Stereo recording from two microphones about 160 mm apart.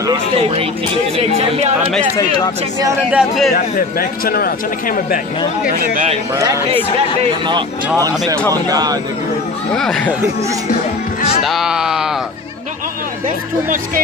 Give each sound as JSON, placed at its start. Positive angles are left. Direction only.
{"t": 1.1, "sound": "speech", "side_deg": -40}
{"t": 2.1, "sound": "speech", "side_deg": 25}
{"t": 3.1, "sound": "speech", "side_deg": -5}
{"t": 3.5, "sound": "a man's voice", "side_deg": 65}
{"t": 6.3, "sound": "speech", "side_deg": -20}
{"t": 7.2, "sound": "speech", "side_deg": -30}
{"t": 8.6, "sound": "speech", "side_deg": -25}
{"t": 9.8, "sound": "speech", "side_deg": 5}
{"t": 11.4, "sound": "speech", "side_deg": 0}